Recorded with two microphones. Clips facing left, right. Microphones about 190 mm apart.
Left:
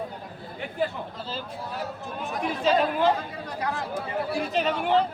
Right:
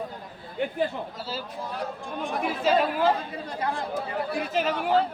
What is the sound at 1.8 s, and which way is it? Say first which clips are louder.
Speech: right 3 dB; centre (ahead or behind).